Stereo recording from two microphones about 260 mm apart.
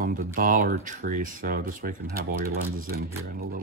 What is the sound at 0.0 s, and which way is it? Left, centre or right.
Speech, right.